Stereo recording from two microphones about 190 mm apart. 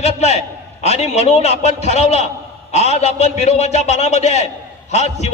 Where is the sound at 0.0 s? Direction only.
35° left (ahead or behind).